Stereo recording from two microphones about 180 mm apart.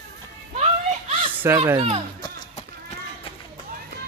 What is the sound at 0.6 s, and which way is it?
Children playing, 35° right (ahead or behind).